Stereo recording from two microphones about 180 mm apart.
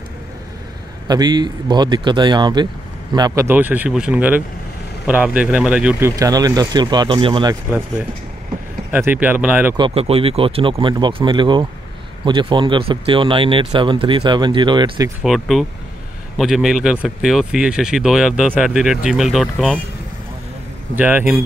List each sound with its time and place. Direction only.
1.0 s a man's voice: 25° right (ahead or behind)
8.9 s speech: 10° right (ahead or behind)
9.8 s a man's voice: 30° right (ahead or behind)
15.2 s speech: centre (ahead or behind)
20.9 s speech: 10° right (ahead or behind)